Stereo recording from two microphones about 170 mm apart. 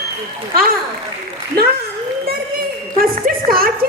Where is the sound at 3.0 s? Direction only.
60° right (ahead or behind).